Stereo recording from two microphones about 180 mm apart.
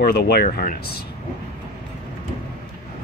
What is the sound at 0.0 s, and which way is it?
Speech, 60° left (ahead or behind).